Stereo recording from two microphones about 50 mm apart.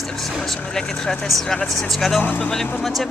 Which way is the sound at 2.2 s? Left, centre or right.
Left.